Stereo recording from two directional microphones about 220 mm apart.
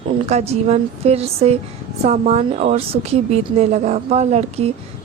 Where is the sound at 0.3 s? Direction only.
30° right (ahead or behind).